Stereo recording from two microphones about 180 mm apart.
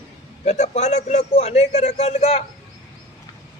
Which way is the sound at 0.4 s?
40° left (ahead or behind).